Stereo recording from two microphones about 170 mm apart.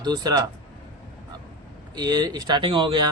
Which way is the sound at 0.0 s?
25° right (ahead or behind).